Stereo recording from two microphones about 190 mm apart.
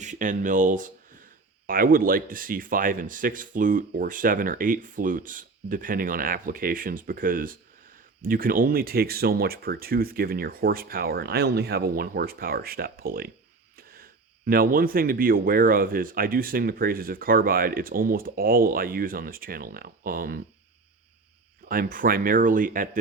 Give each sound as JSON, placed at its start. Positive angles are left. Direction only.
{"t": 0.0, "sound": "speech", "side_deg": -40}
{"t": 21.7, "sound": "speech", "side_deg": -50}